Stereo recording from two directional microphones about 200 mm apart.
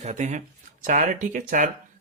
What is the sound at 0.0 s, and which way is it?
Speech, 35° right (ahead or behind).